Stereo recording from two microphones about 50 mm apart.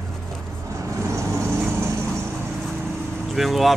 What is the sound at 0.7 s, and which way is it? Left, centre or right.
Vehicle, right.